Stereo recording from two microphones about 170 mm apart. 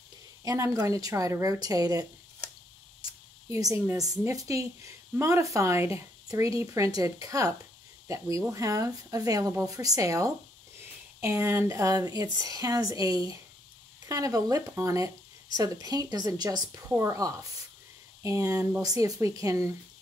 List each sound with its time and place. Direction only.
0.4 s speech: 20° right (ahead or behind)